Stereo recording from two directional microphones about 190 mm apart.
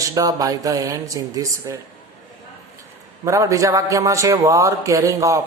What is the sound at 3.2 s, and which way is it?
Speech, 15° right (ahead or behind).